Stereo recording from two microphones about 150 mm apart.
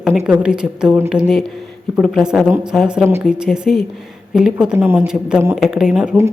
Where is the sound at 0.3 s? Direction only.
5° right (ahead or behind).